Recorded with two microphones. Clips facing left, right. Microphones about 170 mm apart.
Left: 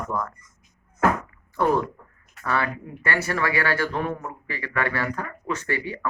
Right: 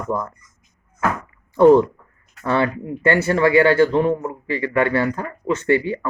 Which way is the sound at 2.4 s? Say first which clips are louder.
Right 6 dB; 25° right (ahead or behind).